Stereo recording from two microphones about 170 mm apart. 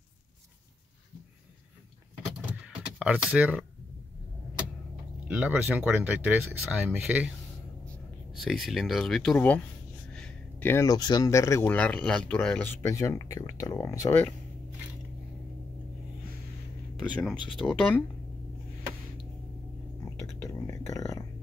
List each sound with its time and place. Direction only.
2.6 s a sound: 5° right (ahead or behind)
5.3 s speech: 5° right (ahead or behind)
8.5 s speech: centre (ahead or behind); by 14.3 s 15° left (ahead or behind)
17.0 s speech: centre (ahead or behind)
20.3 s whispering: 20° left (ahead or behind)